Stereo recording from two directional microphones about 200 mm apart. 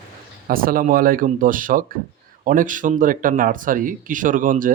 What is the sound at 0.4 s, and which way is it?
Speech, 45° right (ahead or behind).